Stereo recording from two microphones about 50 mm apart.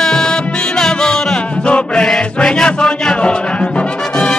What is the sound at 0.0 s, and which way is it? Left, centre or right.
Music, centre.